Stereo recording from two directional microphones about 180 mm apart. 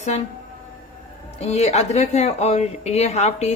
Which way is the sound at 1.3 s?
35° left (ahead or behind).